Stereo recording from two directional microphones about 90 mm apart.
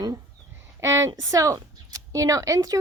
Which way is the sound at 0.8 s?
30° right (ahead or behind).